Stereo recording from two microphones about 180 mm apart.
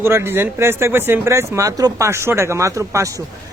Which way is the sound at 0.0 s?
15° right (ahead or behind).